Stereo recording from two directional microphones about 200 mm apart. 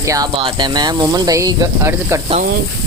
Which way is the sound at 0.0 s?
15° right (ahead or behind).